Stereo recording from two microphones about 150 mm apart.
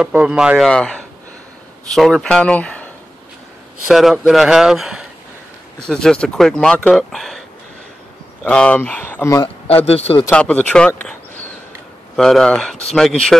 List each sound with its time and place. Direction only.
0.0 s speech: 5° right (ahead or behind)
0.7 s speech: 5° left (ahead or behind)
3.9 s speech: centre (ahead or behind)
8.5 s speech: 10° left (ahead or behind)
9.8 s a man's voice: 40° left (ahead or behind)
10.3 s speech: 10° left (ahead or behind)
12.2 s speech: 5° left (ahead or behind)